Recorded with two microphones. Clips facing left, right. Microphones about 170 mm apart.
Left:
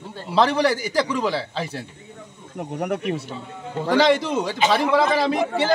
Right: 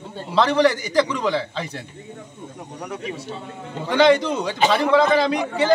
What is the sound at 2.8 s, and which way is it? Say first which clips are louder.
Speech: left 6 dB; 60° left (ahead or behind).